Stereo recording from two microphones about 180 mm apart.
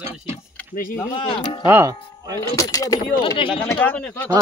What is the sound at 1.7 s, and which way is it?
Speech, 15° right (ahead or behind).